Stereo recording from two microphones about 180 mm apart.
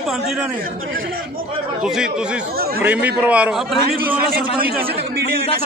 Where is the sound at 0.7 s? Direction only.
50° right (ahead or behind).